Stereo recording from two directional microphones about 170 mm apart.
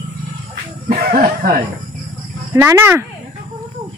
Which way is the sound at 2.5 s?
15° right (ahead or behind).